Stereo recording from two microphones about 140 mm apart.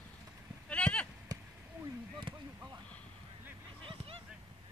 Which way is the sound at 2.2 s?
35° right (ahead or behind).